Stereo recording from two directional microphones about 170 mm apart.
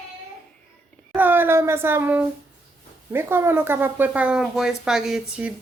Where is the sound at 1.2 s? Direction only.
10° right (ahead or behind).